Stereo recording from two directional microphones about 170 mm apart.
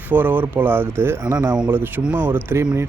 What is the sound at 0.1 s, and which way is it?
Speech, 10° right (ahead or behind).